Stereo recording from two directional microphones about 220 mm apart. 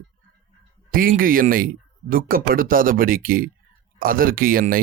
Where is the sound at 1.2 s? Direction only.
40° right (ahead or behind).